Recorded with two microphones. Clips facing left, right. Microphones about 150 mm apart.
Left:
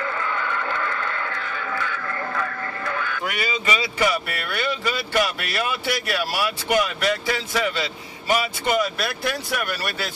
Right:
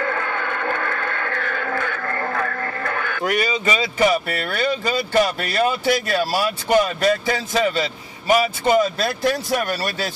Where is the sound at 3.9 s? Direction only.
25° right (ahead or behind).